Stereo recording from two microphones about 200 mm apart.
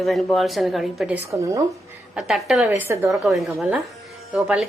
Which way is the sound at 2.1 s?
Centre (ahead or behind).